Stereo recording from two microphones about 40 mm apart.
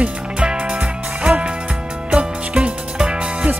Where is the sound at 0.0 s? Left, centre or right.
Right.